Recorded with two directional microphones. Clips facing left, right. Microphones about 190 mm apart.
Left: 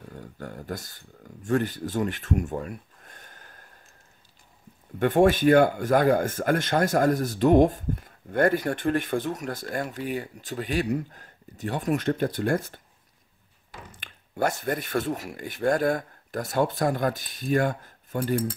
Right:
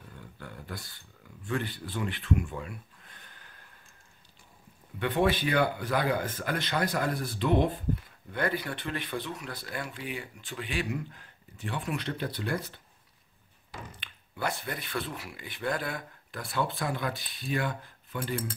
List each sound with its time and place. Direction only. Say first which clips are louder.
0.1 s a sound: left 7 dB; 45° left (ahead or behind)
4.9 s speech: left 7 dB; 45° left (ahead or behind)
13.9 s speech: left 10 dB; 50° left (ahead or behind)